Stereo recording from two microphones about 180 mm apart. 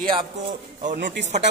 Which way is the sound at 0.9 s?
70° right (ahead or behind).